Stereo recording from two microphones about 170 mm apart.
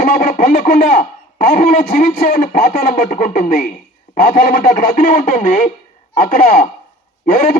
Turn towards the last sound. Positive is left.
turn(degrees=55)  # may be behind; listen again after turning